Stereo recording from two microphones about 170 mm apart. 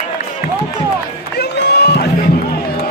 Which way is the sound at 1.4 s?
75° left (ahead or behind).